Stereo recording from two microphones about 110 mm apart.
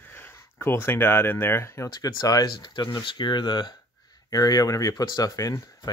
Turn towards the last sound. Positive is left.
turn(degrees=30)  # may be behind; listen again after turning